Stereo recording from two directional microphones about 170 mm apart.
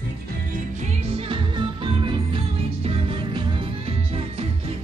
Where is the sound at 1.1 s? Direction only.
30° right (ahead or behind).